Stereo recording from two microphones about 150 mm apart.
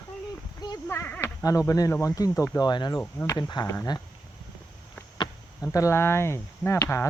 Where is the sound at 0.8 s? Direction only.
15° left (ahead or behind).